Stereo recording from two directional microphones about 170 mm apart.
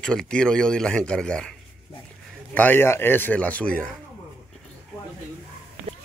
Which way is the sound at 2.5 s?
10° left (ahead or behind).